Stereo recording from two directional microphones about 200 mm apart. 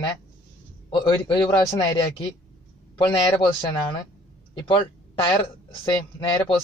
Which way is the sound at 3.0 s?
20° left (ahead or behind).